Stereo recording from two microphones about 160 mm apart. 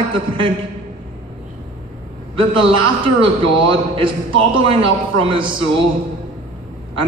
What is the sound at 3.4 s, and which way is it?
A man's voice, 35° right (ahead or behind).